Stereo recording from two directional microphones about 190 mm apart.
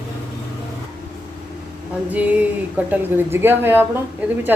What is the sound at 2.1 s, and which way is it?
A woman's voice, 10° right (ahead or behind).